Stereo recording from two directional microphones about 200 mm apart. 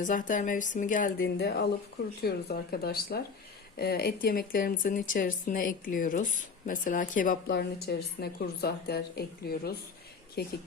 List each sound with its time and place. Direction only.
0.0 s speech: 40° left (ahead or behind)
7.5 s speech: 55° left (ahead or behind)